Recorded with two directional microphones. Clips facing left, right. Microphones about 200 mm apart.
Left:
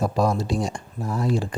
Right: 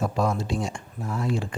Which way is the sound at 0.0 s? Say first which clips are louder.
Left 3 dB; 35° left (ahead or behind).